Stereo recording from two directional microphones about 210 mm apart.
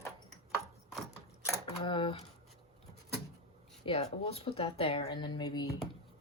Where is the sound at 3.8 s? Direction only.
30° left (ahead or behind).